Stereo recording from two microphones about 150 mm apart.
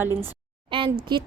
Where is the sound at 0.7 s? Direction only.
35° right (ahead or behind).